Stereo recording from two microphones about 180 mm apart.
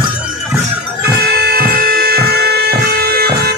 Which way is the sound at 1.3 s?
60° right (ahead or behind).